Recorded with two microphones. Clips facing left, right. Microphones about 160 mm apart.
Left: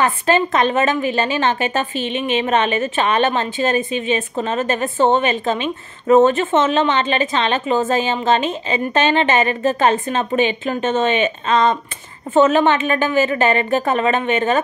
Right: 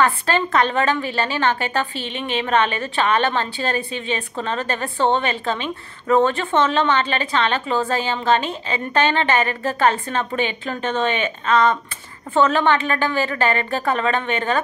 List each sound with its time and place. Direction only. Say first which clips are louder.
0.0 s a woman's voice: left 3 dB; 20° left (ahead or behind)